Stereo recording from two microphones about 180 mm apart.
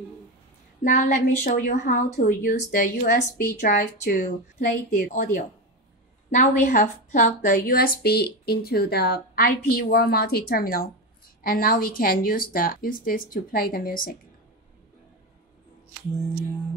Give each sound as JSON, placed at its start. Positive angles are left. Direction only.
{"t": 0.8, "sound": "a woman's voice", "side_deg": 45}